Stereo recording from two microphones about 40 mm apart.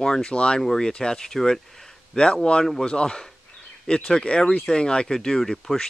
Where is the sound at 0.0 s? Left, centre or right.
Centre.